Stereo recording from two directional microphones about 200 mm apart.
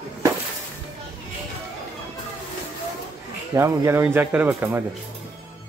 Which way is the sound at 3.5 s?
15° right (ahead or behind).